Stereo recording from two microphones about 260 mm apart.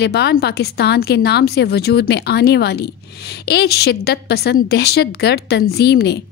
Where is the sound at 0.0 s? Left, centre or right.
Left.